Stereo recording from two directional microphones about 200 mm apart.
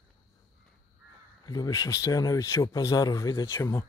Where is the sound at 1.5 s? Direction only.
15° left (ahead or behind).